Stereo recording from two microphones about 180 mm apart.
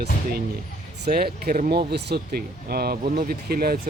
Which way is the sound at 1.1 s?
55° right (ahead or behind).